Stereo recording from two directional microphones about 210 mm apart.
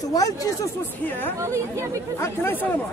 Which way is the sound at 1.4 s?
15° right (ahead or behind).